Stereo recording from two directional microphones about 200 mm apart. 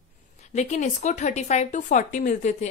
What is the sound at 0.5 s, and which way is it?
A woman's voice, 35° left (ahead or behind).